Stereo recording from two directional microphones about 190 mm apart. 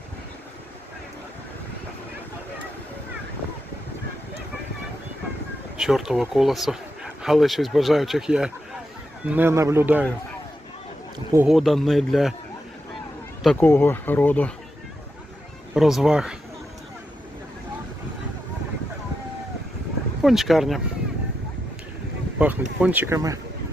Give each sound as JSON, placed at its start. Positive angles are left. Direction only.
{"t": 5.7, "sound": "speech", "side_deg": -5}
{"t": 11.3, "sound": "speech", "side_deg": 0}
{"t": 13.4, "sound": "speech", "side_deg": 0}
{"t": 13.7, "sound": "speech", "side_deg": 10}
{"t": 15.7, "sound": "speech", "side_deg": 0}
{"t": 20.2, "sound": "speech", "side_deg": 0}
{"t": 22.4, "sound": "speech", "side_deg": -5}